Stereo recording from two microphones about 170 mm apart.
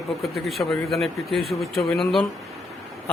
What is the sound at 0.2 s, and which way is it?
Speech, centre (ahead or behind).